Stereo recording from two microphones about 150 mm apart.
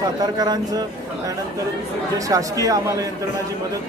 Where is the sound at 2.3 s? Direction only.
25° right (ahead or behind).